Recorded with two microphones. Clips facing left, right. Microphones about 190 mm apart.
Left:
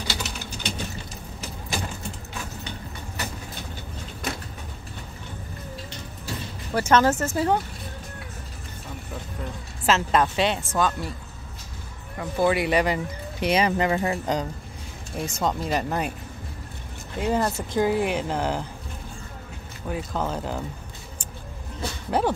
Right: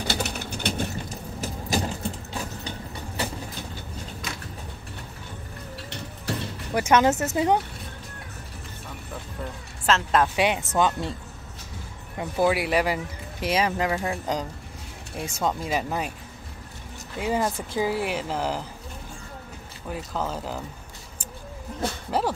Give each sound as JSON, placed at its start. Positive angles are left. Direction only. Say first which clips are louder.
{"t": 0.0, "sound": "a sound", "louder": "right 4 dB", "side_deg": -55}
{"t": 1.4, "sound": "vehicle", "louder": "right 5 dB", "side_deg": -40}
{"t": 6.3, "sound": "a sound", "louder": "right 4 dB", "side_deg": -75}
{"t": 6.7, "sound": "speech", "louder": "even", "side_deg": -15}
{"t": 9.8, "sound": "speech", "louder": "left 1 dB", "side_deg": 5}
{"t": 10.3, "sound": "speech", "louder": "right 1 dB", "side_deg": -10}
{"t": 12.2, "sound": "speech", "louder": "left 1 dB", "side_deg": -10}
{"t": 17.2, "sound": "speech", "louder": "left 1 dB", "side_deg": -10}
{"t": 19.9, "sound": "speech", "louder": "left 2 dB", "side_deg": 0}
{"t": 22.1, "sound": "speech", "louder": "left 3 dB", "side_deg": 0}